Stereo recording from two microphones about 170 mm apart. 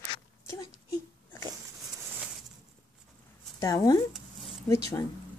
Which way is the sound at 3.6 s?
20° left (ahead or behind).